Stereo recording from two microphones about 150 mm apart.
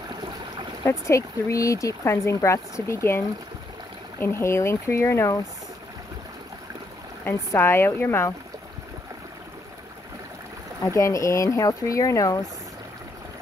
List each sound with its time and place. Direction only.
0.8 s speech: 20° left (ahead or behind)
7.2 s speech: 15° left (ahead or behind)
10.8 s speech: 20° left (ahead or behind)